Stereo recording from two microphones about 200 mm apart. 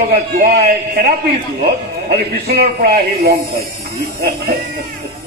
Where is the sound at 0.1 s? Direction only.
50° right (ahead or behind).